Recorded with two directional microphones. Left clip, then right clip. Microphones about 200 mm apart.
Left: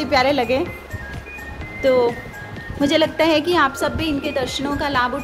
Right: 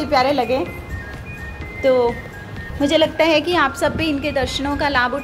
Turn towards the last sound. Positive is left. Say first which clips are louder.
# right 2 dB
turn(degrees=5)  # may be behind; listen again after turning